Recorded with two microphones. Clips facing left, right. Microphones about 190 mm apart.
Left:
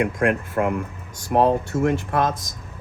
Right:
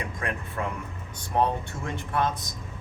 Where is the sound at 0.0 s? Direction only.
80° left.